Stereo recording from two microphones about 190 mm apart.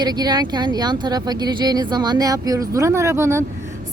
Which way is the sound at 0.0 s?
20° right (ahead or behind).